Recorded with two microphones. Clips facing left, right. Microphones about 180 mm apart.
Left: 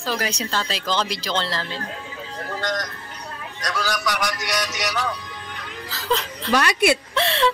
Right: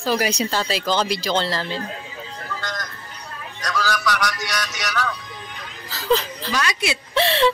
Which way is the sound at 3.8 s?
20° left (ahead or behind).